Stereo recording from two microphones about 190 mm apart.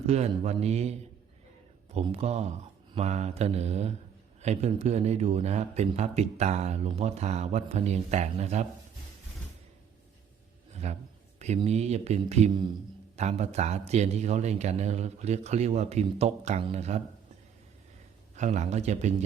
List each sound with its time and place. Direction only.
0.0 s speech: 35° right (ahead or behind)
10.8 s speech: 35° right (ahead or behind)
18.3 s speech: 40° right (ahead or behind)